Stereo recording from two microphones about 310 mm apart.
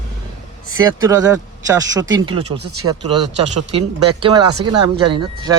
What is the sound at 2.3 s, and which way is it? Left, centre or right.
Speech, right.